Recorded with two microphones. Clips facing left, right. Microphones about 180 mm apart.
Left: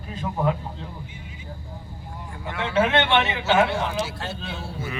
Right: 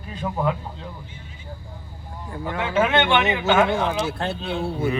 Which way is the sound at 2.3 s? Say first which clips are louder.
Right 1 dB; 40° right (ahead or behind).